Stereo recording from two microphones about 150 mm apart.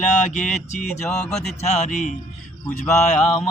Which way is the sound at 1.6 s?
50° left (ahead or behind).